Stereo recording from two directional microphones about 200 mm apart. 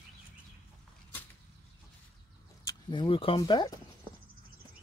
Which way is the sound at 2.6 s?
25° left (ahead or behind).